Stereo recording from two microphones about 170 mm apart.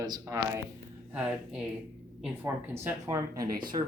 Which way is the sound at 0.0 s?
20° right (ahead or behind).